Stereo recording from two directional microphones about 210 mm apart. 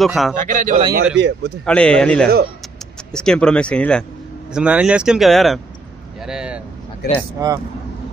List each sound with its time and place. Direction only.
0.0 s speech: centre (ahead or behind)
0.4 s a man's voice: 40° right (ahead or behind)
1.1 s a man's voice: 55° right (ahead or behind)
1.6 s speech: 5° left (ahead or behind)
7.0 s speech: 50° left (ahead or behind)
7.3 s speech: 15° right (ahead or behind)